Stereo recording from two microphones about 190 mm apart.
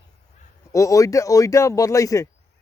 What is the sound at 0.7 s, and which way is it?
Speech, 15° left (ahead or behind).